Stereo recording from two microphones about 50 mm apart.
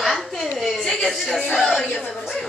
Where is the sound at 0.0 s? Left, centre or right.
Centre.